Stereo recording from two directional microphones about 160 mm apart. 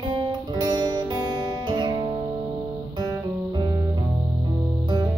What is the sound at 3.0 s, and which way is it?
Music, 30° right (ahead or behind).